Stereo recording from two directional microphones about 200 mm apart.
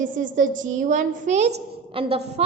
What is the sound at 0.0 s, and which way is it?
A woman's voice, 40° right (ahead or behind).